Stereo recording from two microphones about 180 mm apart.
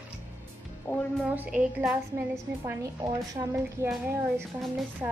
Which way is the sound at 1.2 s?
5° right (ahead or behind).